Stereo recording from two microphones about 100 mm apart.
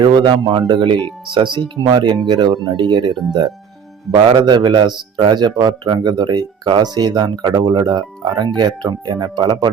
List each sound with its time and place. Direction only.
0.0 s speech: 50° right (ahead or behind)
4.2 s speech: 55° right (ahead or behind)